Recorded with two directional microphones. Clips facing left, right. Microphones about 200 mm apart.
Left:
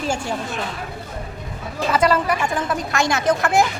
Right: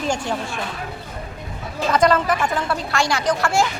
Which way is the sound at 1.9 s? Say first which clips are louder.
Right 1 dB; 10° left (ahead or behind).